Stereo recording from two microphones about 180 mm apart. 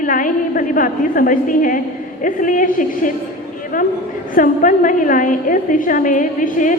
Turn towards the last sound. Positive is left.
turn(degrees=45)  # may be behind; listen again after turning